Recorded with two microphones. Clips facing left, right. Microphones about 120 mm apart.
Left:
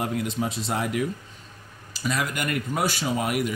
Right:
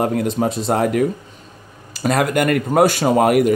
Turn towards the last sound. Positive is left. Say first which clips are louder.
# right 12 dB
turn(degrees=-55)  # may be behind; listen again after turning